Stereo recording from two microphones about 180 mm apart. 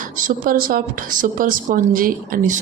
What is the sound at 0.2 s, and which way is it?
A woman's voice, 50° right (ahead or behind).